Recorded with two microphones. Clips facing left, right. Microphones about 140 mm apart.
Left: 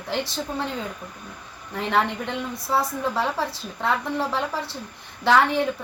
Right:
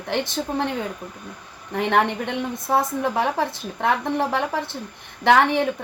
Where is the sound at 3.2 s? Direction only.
50° right (ahead or behind).